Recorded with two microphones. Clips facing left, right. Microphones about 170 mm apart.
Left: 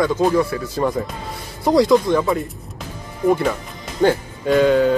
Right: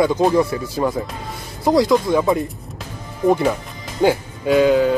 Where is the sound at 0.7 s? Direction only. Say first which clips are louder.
Left 1 dB; centre (ahead or behind).